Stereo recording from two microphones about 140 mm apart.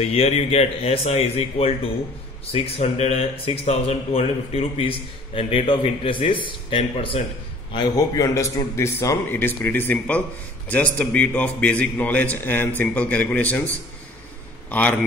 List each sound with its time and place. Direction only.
0.0 s a man's voice: 45° left (ahead or behind)
7.7 s a man's voice: 30° left (ahead or behind); by 13.7 s 10° left (ahead or behind)
14.7 s a man's voice: 10° left (ahead or behind)